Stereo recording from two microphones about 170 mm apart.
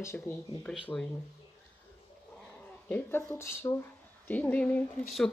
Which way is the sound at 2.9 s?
15° left (ahead or behind).